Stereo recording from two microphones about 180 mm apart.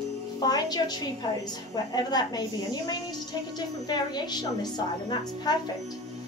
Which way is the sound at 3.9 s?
25° left (ahead or behind).